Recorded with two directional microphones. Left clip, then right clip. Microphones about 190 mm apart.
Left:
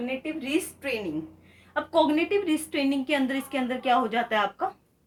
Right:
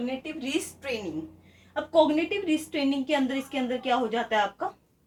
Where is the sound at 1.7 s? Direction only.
40° left (ahead or behind).